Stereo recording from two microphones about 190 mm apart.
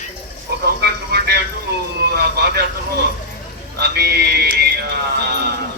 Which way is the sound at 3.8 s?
60° right (ahead or behind).